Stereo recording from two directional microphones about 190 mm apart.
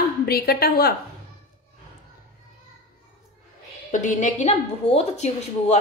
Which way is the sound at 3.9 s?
40° left (ahead or behind).